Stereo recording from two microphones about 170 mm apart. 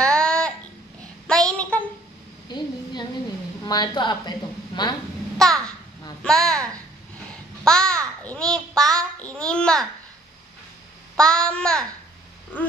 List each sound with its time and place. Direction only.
0.0 s a sound: 5° left (ahead or behind)
2.5 s a sound: 25° left (ahead or behind)
3.6 s a woman's voice: 25° left (ahead or behind)
5.4 s babbling: 5° left (ahead or behind)
6.2 s a child's voice: 5° left (ahead or behind)
7.6 s babbling: 5° left (ahead or behind)
8.2 s a child's voice: 5° left (ahead or behind)
11.1 s a child's voice: 5° left (ahead or behind)
12.5 s a sound: 10° left (ahead or behind)